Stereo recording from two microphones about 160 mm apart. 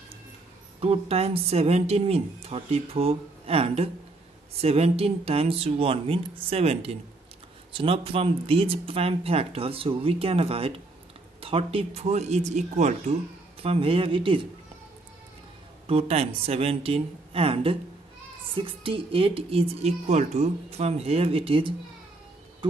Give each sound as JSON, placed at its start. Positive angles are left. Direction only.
{"t": 0.7, "sound": "a woman's voice", "side_deg": -40}
{"t": 13.6, "sound": "a woman's voice", "side_deg": -35}
{"t": 15.9, "sound": "a woman's voice", "side_deg": -40}